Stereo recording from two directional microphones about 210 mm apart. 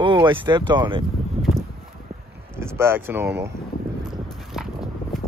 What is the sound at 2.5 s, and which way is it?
Speech, 10° right (ahead or behind).